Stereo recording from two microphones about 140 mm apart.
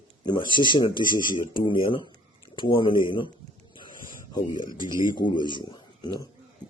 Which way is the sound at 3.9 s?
30° left (ahead or behind).